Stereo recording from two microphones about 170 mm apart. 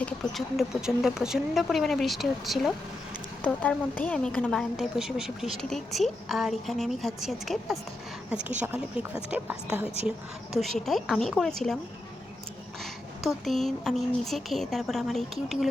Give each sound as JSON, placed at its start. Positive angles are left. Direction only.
{"t": 0.0, "sound": "a woman's voice", "side_deg": 0}
{"t": 12.8, "sound": "speech", "side_deg": 0}